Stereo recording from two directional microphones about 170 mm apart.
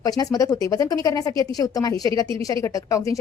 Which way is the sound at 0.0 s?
20° left (ahead or behind).